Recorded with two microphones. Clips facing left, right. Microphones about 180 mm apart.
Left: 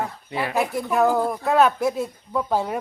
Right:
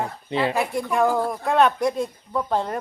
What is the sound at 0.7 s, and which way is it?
Speech, centre (ahead or behind).